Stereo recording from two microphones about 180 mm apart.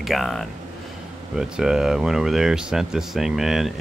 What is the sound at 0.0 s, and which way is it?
Speech, centre (ahead or behind).